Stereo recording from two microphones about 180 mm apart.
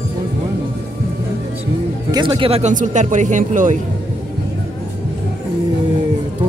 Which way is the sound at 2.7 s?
45° right (ahead or behind).